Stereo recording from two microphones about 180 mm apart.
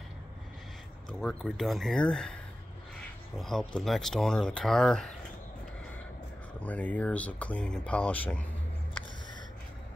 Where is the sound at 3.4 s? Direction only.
5° left (ahead or behind).